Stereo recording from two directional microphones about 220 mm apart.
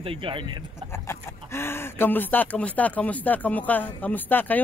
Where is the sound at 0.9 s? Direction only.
10° left (ahead or behind).